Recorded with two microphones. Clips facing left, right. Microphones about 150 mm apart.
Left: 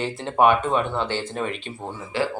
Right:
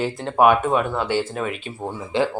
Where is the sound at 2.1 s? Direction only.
20° right (ahead or behind).